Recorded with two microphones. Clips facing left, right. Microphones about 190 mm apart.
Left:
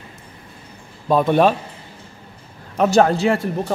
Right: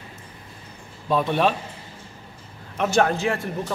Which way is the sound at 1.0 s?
45° left (ahead or behind).